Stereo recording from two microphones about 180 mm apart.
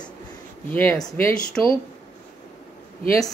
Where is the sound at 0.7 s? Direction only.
10° left (ahead or behind).